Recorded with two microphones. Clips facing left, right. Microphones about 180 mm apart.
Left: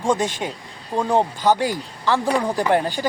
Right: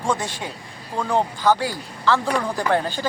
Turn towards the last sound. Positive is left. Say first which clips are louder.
# left 2 dB
turn(degrees=15)  # may be behind; listen again after turning